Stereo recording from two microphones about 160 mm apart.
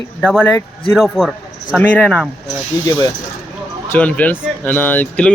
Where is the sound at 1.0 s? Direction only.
5° right (ahead or behind).